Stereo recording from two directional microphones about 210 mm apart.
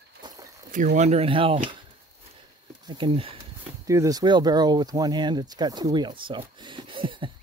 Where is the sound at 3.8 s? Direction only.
15° right (ahead or behind).